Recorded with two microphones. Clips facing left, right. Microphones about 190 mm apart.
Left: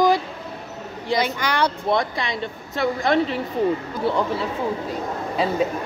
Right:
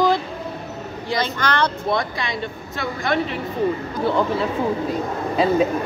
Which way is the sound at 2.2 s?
25° left (ahead or behind).